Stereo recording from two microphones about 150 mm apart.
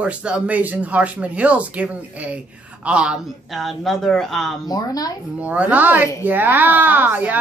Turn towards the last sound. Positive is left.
turn(degrees=-10)  # may be behind; listen again after turning